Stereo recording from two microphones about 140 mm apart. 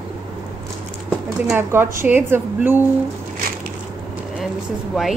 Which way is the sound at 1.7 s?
15° right (ahead or behind).